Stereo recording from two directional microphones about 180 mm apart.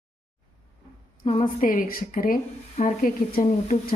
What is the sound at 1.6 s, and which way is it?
A woman's voice, 50° left (ahead or behind).